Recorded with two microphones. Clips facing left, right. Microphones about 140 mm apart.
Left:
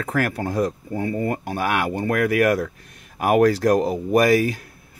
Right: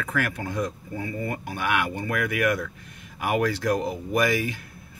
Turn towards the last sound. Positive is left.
turn(degrees=40)  # may be behind; listen again after turning